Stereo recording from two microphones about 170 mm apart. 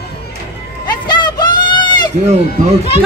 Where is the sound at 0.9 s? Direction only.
25° left (ahead or behind).